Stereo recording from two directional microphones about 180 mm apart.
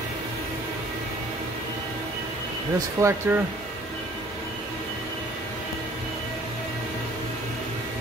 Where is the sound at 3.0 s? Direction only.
15° right (ahead or behind).